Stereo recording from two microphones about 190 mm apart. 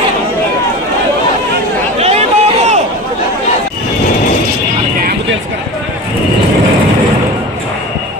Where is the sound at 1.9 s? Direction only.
35° right (ahead or behind).